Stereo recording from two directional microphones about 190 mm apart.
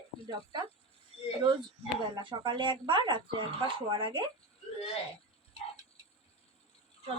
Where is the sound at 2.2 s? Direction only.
25° right (ahead or behind).